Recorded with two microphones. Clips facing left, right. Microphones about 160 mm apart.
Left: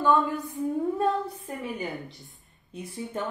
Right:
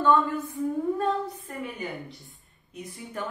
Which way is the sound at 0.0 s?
10° left (ahead or behind).